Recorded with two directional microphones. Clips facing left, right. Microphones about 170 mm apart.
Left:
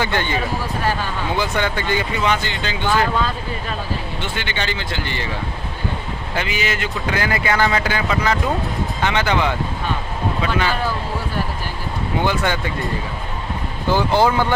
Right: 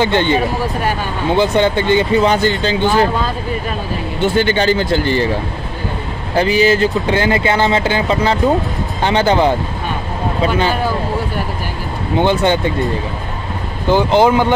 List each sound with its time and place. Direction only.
0.0 s speech: 25° right (ahead or behind)
4.2 s speech: 40° right (ahead or behind)
6.3 s speech: 35° right (ahead or behind)
12.2 s speech: 25° right (ahead or behind)